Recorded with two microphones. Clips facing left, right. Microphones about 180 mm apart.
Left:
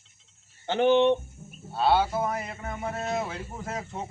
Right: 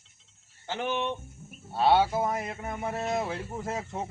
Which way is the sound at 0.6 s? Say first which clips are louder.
Left 10 dB; 30° left (ahead or behind).